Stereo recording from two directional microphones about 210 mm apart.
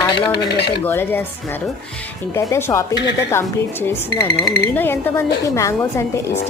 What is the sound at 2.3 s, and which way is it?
Speech, 10° left (ahead or behind).